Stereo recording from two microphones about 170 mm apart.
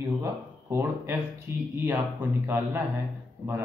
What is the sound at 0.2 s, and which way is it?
Speech, 15° right (ahead or behind).